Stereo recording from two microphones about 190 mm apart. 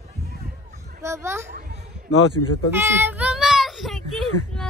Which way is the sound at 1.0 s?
15° right (ahead or behind).